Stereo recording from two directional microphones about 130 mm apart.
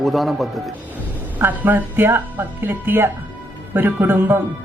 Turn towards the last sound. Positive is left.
turn(degrees=-15)  # may be behind; listen again after turning